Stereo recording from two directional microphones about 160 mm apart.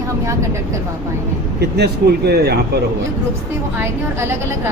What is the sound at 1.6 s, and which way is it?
Speech, 90° right.